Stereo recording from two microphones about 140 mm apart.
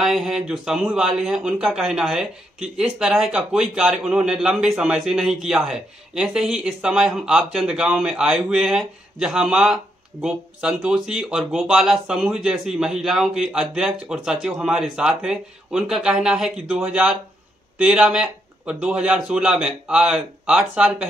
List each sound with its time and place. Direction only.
0.0 s a man's voice: centre (ahead or behind)